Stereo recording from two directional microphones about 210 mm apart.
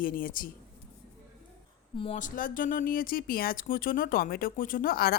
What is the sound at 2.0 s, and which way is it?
Speech, 35° left (ahead or behind).